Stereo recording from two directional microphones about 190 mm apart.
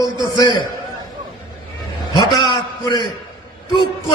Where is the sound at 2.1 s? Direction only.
25° left (ahead or behind).